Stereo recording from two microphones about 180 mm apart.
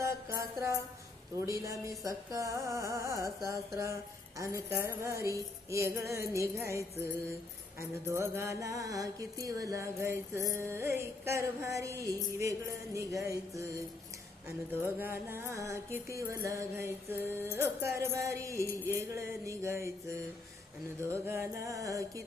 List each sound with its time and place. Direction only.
0.0 s music: 15° right (ahead or behind)
1.4 s mantra: 15° right (ahead or behind)
21.0 s mantra: 15° right (ahead or behind)